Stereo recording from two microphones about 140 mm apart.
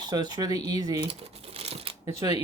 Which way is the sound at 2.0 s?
25° right (ahead or behind).